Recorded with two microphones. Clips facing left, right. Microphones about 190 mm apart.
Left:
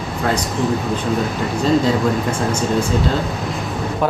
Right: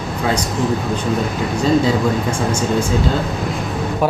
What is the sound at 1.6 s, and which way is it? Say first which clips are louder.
Speech: even; centre (ahead or behind).